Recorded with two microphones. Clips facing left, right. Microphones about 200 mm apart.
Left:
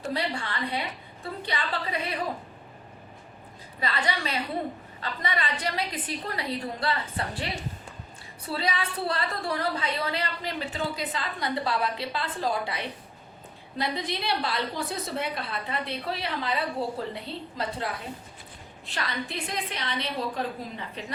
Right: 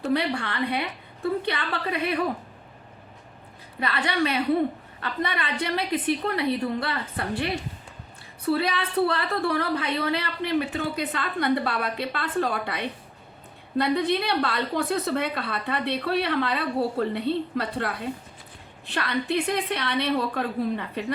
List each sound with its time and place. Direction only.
0.1 s a woman's voice: 60° right (ahead or behind)
3.8 s a woman's voice: 60° right (ahead or behind)
8.4 s a woman's voice: 60° right (ahead or behind)